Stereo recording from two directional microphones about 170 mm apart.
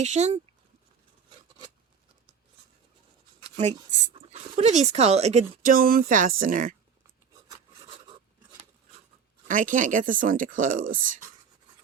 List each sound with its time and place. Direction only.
0.0 s speech: 40° right (ahead or behind)
4.1 s speech: 40° right (ahead or behind)
7.4 s filing: 25° right (ahead or behind)
9.5 s speech: 50° right (ahead or behind)